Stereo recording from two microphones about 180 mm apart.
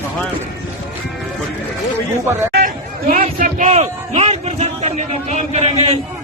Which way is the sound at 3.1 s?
50° right (ahead or behind).